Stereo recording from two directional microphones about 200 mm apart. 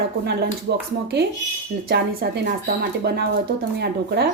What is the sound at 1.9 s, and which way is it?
A woman's voice, 50° right (ahead or behind).